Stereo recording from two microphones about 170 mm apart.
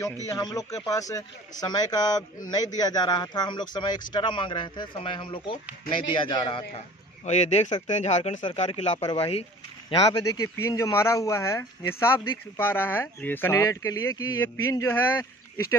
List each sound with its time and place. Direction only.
0.3 s a man's voice: 20° left (ahead or behind)
7.2 s speech: 40° left (ahead or behind)
9.0 s a man's voice: 30° left (ahead or behind)